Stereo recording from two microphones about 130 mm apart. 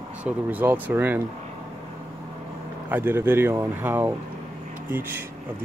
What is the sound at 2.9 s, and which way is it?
Speech, 15° right (ahead or behind).